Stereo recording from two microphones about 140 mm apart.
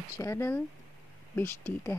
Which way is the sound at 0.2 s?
20° left (ahead or behind).